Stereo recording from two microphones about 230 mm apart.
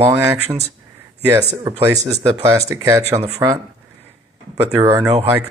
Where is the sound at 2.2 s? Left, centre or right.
Centre.